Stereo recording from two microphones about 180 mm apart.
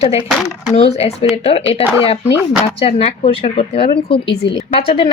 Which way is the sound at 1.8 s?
10° right (ahead or behind).